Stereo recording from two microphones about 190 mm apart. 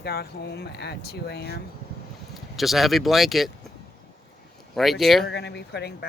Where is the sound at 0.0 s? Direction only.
55° left (ahead or behind).